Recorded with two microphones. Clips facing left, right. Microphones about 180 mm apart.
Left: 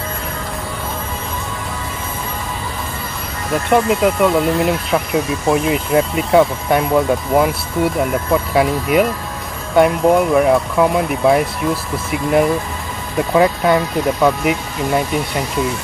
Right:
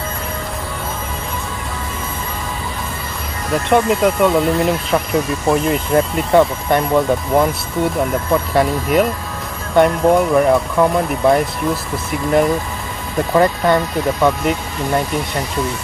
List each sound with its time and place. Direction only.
3.5 s speech: centre (ahead or behind)